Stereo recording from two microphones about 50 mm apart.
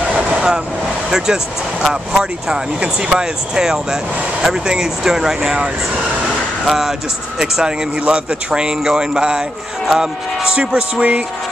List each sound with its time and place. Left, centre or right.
0.1 s vehicle: centre
1.1 s speech: centre
8.0 s speech: right